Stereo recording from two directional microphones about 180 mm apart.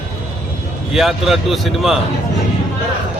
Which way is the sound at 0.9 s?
Centre (ahead or behind).